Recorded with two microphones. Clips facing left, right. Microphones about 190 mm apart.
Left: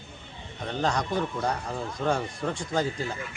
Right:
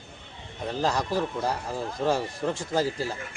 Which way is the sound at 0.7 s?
5° right (ahead or behind).